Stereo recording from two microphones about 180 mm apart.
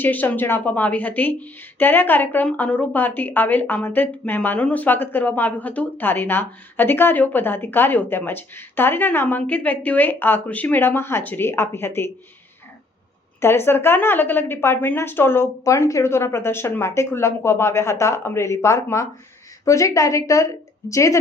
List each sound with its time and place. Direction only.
0.0 s a woman's voice: 10° left (ahead or behind)
13.4 s a woman's voice: 15° left (ahead or behind)